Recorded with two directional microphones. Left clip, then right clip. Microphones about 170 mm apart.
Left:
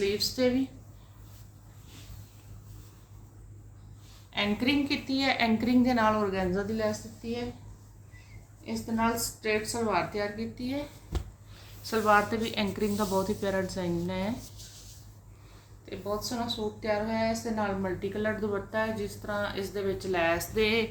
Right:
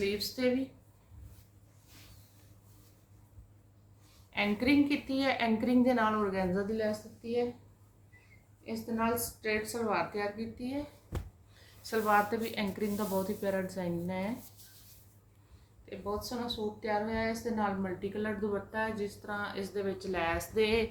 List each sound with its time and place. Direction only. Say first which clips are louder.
0.0 s a woman's voice: left 5 dB; centre (ahead or behind)
4.3 s a woman's voice: left 1 dB; centre (ahead or behind)
8.6 s a woman's voice: left 4 dB; 5° left (ahead or behind)
11.8 s speech: left 4 dB; 15° left (ahead or behind)
15.9 s a woman's voice: left 4 dB; 10° left (ahead or behind)